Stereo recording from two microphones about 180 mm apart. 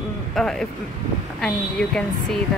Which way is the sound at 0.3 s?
5° left (ahead or behind).